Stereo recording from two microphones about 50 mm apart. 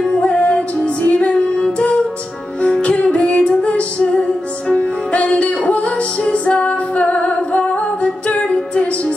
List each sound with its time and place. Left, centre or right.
0.2 s music: left